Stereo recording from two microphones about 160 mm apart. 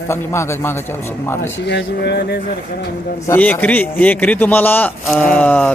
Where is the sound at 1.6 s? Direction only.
90° left.